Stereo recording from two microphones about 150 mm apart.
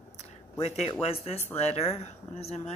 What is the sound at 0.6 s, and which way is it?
Speech, 45° left (ahead or behind).